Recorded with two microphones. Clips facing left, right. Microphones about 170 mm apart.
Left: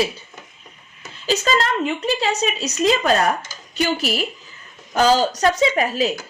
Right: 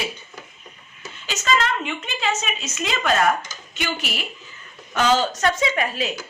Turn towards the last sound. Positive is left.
turn(degrees=40)  # may be behind; listen again after turning